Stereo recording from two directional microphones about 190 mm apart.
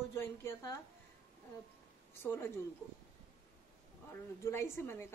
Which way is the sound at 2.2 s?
15° left (ahead or behind).